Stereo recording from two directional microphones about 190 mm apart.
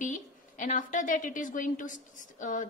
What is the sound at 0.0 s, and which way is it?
A woman's voice, 40° left (ahead or behind).